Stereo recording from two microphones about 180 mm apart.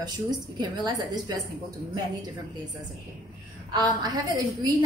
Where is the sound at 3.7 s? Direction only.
25° right (ahead or behind).